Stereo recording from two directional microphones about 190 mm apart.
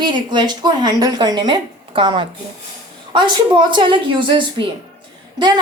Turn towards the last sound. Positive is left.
turn(degrees=-25)  # may be behind; listen again after turning